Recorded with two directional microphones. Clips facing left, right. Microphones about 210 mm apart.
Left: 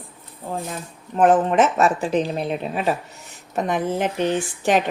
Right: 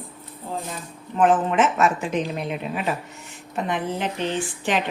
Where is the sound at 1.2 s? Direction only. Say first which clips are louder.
Left 3 dB; 40° left (ahead or behind).